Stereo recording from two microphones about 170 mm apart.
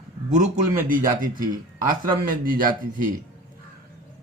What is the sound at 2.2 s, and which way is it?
Speech, 55° right (ahead or behind).